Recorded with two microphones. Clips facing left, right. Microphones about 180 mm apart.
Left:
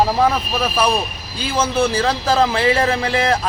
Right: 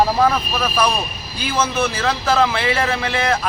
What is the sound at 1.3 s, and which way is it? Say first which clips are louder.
A man's voice: left 2 dB; 30° left (ahead or behind).